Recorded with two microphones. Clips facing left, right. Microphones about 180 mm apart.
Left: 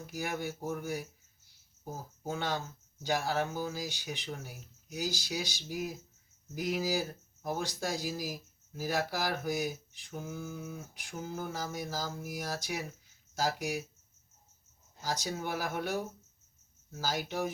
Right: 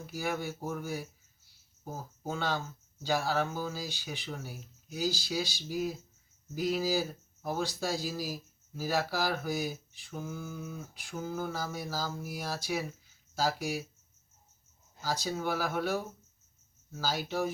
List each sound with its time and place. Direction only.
0.1 s speech: 15° left (ahead or behind)
2.3 s speech: 15° left (ahead or behind)
15.0 s speech: 15° left (ahead or behind)
17.0 s speech: 15° left (ahead or behind)